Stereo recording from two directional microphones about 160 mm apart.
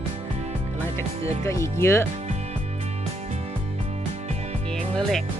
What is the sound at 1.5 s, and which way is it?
Speech, 20° left (ahead or behind).